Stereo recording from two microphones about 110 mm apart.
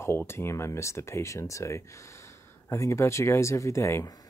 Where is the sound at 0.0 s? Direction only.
20° left (ahead or behind).